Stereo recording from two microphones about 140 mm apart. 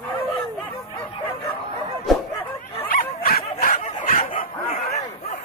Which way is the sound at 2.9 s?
90° left.